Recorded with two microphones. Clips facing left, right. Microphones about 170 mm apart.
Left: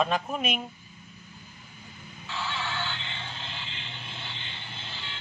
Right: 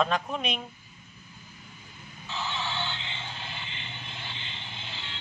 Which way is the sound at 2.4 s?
15° right (ahead or behind).